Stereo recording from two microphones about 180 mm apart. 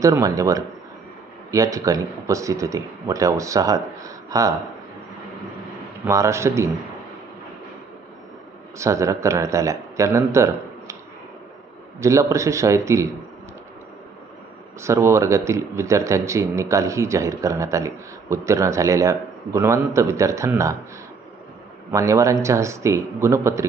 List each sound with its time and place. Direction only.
0.0 s speech: 20° right (ahead or behind)
6.1 s speech: 15° right (ahead or behind)
8.8 s speech: 15° right (ahead or behind)
11.9 s speech: 15° right (ahead or behind)
14.8 s speech: 15° right (ahead or behind)
21.9 s speech: 15° right (ahead or behind)